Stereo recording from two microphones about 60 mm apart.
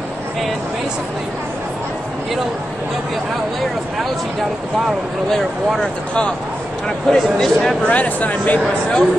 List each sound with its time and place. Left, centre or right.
5.8 s speech: centre
7.8 s speech: left